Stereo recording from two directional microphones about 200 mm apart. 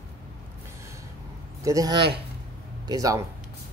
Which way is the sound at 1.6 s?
15° right (ahead or behind).